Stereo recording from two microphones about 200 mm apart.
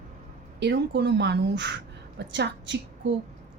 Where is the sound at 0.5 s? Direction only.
60° right (ahead or behind).